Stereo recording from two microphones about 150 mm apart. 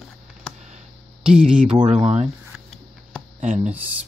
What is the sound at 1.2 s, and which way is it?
Speech, 5° right (ahead or behind).